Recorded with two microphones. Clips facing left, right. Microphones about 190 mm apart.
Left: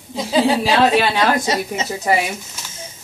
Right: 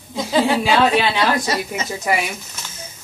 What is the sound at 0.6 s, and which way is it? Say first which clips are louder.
Speech: left 1 dB; 40° left (ahead or behind).